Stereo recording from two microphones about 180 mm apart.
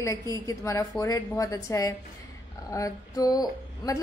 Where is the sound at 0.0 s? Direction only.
15° left (ahead or behind).